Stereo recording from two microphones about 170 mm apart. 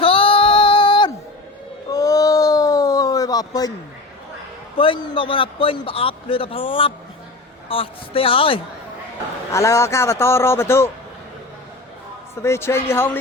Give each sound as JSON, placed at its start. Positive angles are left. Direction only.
{"t": 0.0, "sound": "female singing", "side_deg": 35}
{"t": 1.9, "sound": "a sound", "side_deg": 20}
{"t": 4.8, "sound": "a man's voice", "side_deg": 30}
{"t": 9.5, "sound": "speech", "side_deg": 15}
{"t": 12.4, "sound": "speech", "side_deg": 15}